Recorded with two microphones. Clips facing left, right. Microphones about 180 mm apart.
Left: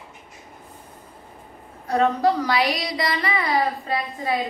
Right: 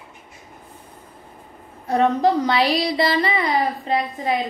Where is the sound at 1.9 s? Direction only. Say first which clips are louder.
Right 2 dB; 20° right (ahead or behind).